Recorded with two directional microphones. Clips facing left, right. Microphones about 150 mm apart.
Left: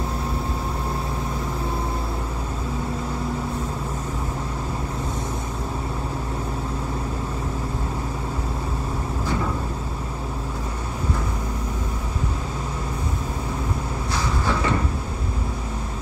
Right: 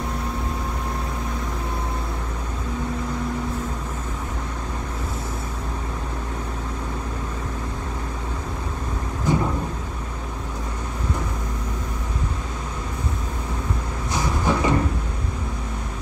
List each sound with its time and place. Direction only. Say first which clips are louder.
9.3 s vehicle: right 5 dB; 20° right (ahead or behind)
14.1 s vehicle: right 3 dB; 15° right (ahead or behind)